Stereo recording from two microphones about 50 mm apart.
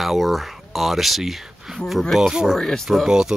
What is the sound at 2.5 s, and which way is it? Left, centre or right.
Speech, centre.